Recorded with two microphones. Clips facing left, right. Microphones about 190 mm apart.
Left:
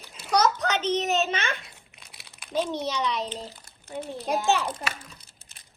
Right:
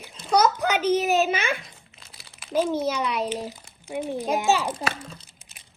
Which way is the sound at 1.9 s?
Centre (ahead or behind).